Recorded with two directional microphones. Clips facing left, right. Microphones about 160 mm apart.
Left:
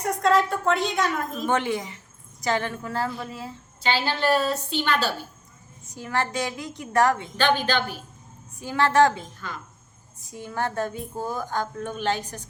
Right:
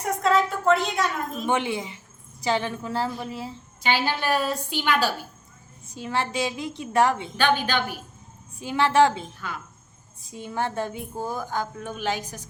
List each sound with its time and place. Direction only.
0.2 s a woman's voice: centre (ahead or behind)
1.5 s a woman's voice: 15° right (ahead or behind)
10.3 s a woman's voice: 20° right (ahead or behind)